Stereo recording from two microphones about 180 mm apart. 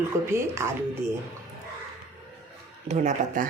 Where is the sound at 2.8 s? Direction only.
40° right (ahead or behind).